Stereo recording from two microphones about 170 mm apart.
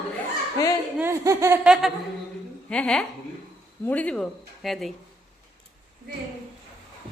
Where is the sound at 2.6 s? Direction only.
5° left (ahead or behind).